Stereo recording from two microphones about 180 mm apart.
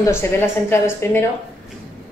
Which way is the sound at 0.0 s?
15° left (ahead or behind).